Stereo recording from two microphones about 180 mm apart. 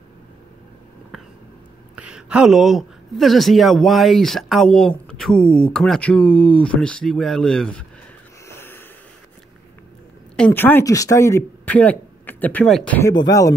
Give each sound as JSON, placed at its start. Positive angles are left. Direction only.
{"t": 2.0, "sound": "speech", "side_deg": -5}
{"t": 8.5, "sound": "snort", "side_deg": 10}
{"t": 10.3, "sound": "speech", "side_deg": 10}
{"t": 13.1, "sound": "speech", "side_deg": 20}